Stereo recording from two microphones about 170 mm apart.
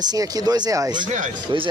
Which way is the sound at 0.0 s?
20° right (ahead or behind).